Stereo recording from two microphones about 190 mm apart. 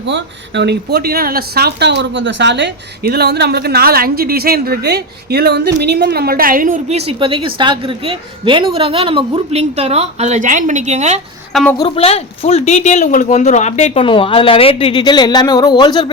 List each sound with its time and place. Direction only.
0.0 s a woman's voice: 70° right (ahead or behind); by 11.2 s 35° right (ahead or behind)
11.5 s a woman's voice: centre (ahead or behind)
11.9 s speech: 30° left (ahead or behind)